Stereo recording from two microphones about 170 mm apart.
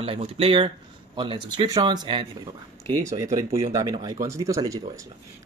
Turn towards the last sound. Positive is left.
turn(degrees=-20)  # may be behind; listen again after turning